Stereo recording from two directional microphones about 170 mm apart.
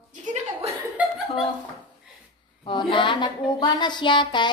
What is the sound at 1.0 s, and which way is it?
Chuckle, 10° right (ahead or behind).